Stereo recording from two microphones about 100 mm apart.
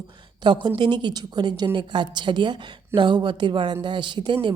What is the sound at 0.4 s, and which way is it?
A woman's voice, 50° right (ahead or behind).